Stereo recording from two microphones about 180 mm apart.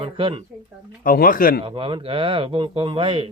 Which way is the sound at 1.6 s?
30° right (ahead or behind).